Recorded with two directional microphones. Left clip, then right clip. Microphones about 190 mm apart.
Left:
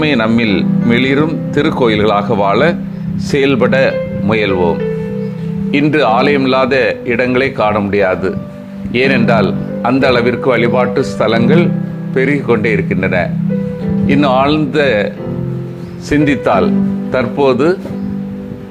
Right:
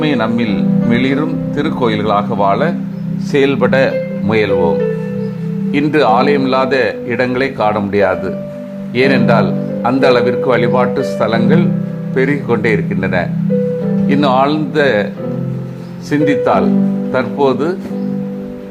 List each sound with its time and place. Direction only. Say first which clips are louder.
0.0 s a man's voice: left 2 dB; 20° left (ahead or behind)
16.0 s a man's voice: even; 10° left (ahead or behind)